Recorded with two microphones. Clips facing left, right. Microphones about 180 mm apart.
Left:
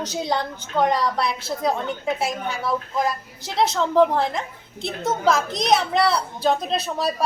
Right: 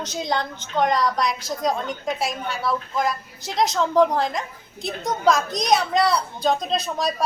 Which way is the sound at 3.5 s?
5° left (ahead or behind).